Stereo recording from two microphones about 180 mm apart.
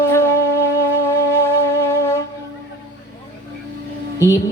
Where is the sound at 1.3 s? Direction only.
15° left (ahead or behind).